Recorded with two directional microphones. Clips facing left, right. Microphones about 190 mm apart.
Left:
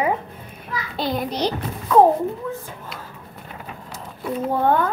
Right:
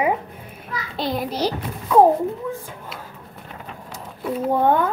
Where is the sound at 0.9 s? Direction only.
Centre (ahead or behind).